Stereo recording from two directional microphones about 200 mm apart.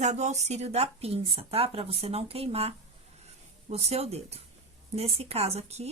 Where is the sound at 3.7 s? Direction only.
30° right (ahead or behind).